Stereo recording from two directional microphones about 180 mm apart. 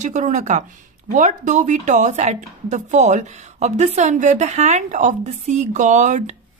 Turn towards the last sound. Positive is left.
turn(degrees=-40)  # may be behind; listen again after turning